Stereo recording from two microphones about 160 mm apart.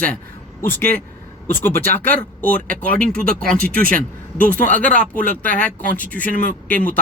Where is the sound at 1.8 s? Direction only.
65° right (ahead or behind).